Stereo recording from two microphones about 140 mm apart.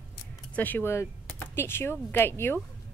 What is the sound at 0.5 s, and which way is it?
Speech, 15° left (ahead or behind).